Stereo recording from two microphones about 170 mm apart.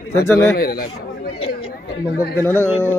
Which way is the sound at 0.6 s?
65° left (ahead or behind).